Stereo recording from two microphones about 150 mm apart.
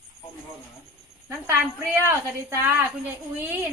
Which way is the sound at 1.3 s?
15° right (ahead or behind).